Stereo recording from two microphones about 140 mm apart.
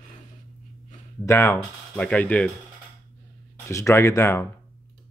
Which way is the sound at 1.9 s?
10° left (ahead or behind).